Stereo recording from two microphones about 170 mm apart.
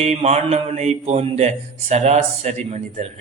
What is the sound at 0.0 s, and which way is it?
Mantra, 40° right (ahead or behind).